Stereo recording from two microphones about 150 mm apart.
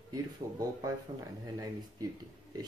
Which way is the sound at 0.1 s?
25° right (ahead or behind).